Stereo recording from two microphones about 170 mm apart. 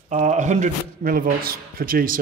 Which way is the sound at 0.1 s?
45° right (ahead or behind).